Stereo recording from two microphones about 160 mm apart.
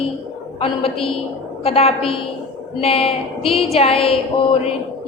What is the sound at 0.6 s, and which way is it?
A woman's voice, 35° left (ahead or behind).